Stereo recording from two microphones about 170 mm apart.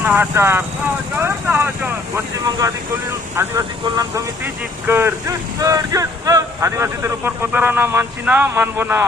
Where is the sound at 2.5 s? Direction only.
20° right (ahead or behind).